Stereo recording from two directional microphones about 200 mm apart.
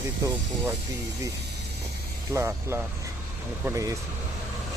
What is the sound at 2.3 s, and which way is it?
Speech, 15° right (ahead or behind).